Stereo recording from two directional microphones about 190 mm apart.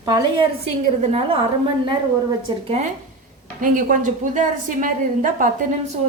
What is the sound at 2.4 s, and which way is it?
Speech, 30° right (ahead or behind).